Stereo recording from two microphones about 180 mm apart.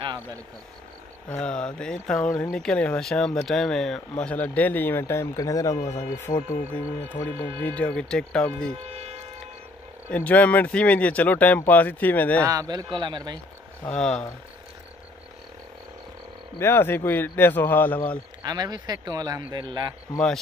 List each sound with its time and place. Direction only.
0.0 s vehicle: 25° right (ahead or behind)
1.3 s speech: 5° left (ahead or behind)
8.7 s speech: 35° right (ahead or behind)
10.1 s speech: 10° left (ahead or behind)
12.4 s speech: 20° right (ahead or behind)
13.8 s speech: 5° left (ahead or behind)
16.5 s speech: 15° left (ahead or behind)
18.4 s speech: 20° right (ahead or behind)